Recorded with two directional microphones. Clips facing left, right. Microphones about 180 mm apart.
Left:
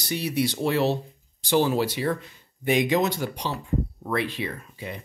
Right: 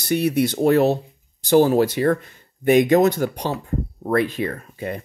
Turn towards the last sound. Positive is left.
turn(degrees=-50)  # may be behind; listen again after turning